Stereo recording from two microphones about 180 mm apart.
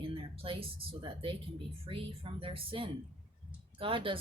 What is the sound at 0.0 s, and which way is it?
Speech, 30° right (ahead or behind).